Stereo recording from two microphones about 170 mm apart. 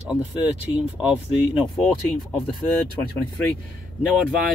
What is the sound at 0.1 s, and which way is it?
Speech, 5° right (ahead or behind).